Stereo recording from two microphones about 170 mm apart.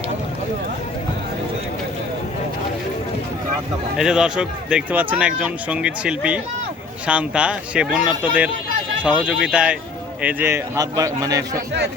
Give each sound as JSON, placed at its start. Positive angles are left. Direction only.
{"t": 3.9, "sound": "a man's voice", "side_deg": -5}